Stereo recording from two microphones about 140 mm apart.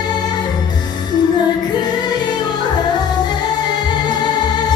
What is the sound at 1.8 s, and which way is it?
Music, 30° left (ahead or behind).